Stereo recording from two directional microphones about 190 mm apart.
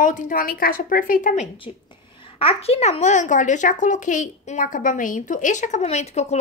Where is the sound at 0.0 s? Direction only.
45° left (ahead or behind).